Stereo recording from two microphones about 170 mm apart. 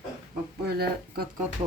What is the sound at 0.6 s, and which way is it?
Speech, 65° right (ahead or behind).